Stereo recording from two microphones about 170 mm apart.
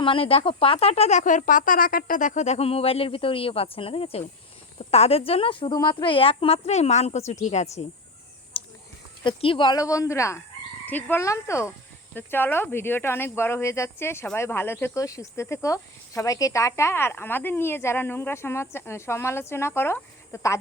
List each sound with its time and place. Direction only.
0.0 s speech: 30° left (ahead or behind)
8.5 s a sound: 30° left (ahead or behind)
9.2 s speech: 30° left (ahead or behind)